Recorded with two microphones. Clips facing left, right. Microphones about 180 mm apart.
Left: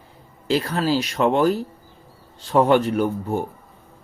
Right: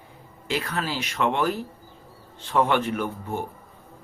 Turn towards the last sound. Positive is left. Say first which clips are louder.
# left 6 dB
turn(degrees=40)  # may be behind; listen again after turning